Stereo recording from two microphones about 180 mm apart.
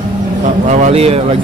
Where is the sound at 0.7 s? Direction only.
40° right (ahead or behind).